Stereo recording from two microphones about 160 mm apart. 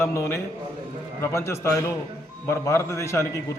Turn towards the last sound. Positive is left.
turn(degrees=20)  # may be behind; listen again after turning